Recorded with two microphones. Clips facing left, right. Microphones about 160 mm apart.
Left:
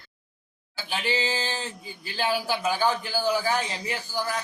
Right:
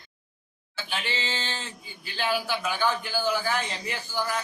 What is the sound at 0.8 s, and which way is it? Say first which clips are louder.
A man's voice: left 5 dB; 40° left (ahead or behind).